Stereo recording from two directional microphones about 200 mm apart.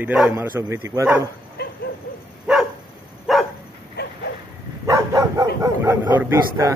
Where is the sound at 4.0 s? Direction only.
55° left (ahead or behind).